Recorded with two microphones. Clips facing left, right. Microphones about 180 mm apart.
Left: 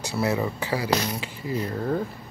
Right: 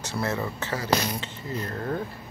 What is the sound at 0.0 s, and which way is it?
Speech, 10° left (ahead or behind).